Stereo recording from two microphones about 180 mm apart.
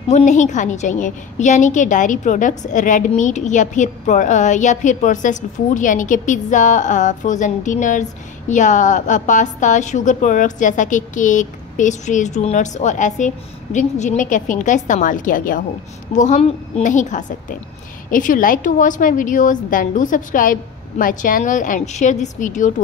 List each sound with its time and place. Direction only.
0.1 s a woman's voice: 40° left (ahead or behind)